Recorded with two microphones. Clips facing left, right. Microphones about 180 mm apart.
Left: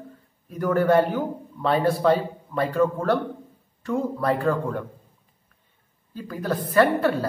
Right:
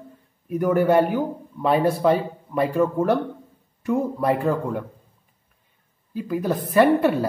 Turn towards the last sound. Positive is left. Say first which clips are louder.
# right 3 dB
turn(degrees=-15)  # may be behind; listen again after turning